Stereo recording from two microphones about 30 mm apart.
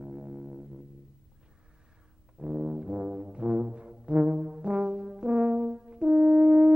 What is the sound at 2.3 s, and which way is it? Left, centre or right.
Brass instrument, right.